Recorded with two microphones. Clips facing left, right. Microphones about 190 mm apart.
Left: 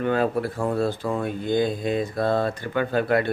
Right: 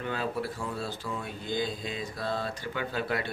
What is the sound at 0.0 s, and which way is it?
Speech, 55° left (ahead or behind).